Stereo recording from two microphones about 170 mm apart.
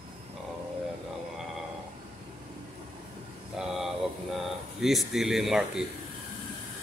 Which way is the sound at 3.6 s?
Centre (ahead or behind).